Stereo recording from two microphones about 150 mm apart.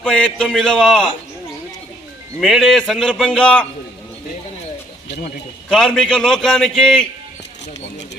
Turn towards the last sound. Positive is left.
turn(degrees=5)  # may be behind; listen again after turning